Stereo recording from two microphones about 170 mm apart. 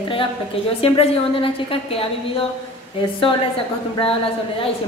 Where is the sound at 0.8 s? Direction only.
35° left (ahead or behind).